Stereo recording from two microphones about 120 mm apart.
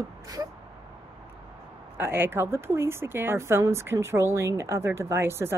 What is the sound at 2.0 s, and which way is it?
A woman's voice, 20° right (ahead or behind).